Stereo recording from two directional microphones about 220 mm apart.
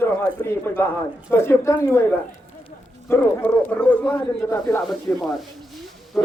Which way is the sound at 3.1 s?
5° left (ahead or behind).